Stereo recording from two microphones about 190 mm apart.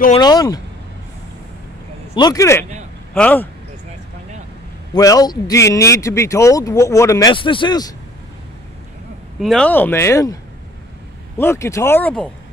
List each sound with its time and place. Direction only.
0.1 s speech: 20° left (ahead or behind)
2.1 s speech: 20° left (ahead or behind)
4.9 s speech: 20° left (ahead or behind)
9.4 s speech: 5° left (ahead or behind)
11.3 s speech: 15° left (ahead or behind)